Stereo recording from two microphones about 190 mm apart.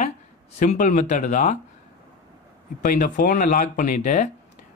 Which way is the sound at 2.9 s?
45° left (ahead or behind).